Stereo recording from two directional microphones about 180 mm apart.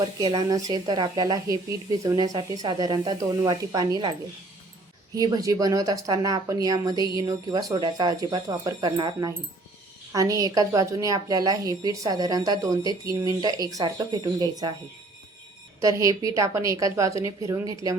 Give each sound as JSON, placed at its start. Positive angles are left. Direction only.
{"t": 0.0, "sound": "a woman's voice", "side_deg": -25}
{"t": 5.1, "sound": "a woman's voice", "side_deg": -20}
{"t": 15.8, "sound": "a woman's voice", "side_deg": -20}